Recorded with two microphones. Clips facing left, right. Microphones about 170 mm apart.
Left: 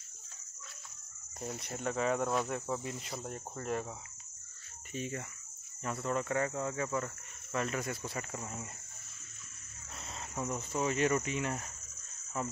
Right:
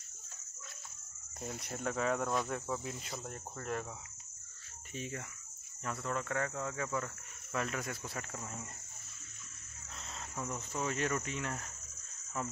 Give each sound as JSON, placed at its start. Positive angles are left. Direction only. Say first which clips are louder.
{"t": 1.5, "sound": "cricket", "louder": "left 1 dB", "side_deg": 10}
{"t": 4.9, "sound": "speech", "louder": "left 3 dB", "side_deg": 5}
{"t": 6.0, "sound": "cricket", "louder": "left 4 dB", "side_deg": 10}
{"t": 7.5, "sound": "speech", "louder": "left 2 dB", "side_deg": 5}
{"t": 10.3, "sound": "cricket", "louder": "left 4 dB", "side_deg": 15}
{"t": 10.8, "sound": "cricket", "louder": "left 5 dB", "side_deg": 5}
{"t": 12.4, "sound": "speech", "louder": "left 2 dB", "side_deg": 5}